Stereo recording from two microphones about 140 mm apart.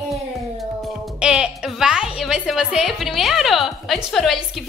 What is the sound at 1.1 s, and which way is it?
A woman's voice, 5° right (ahead or behind).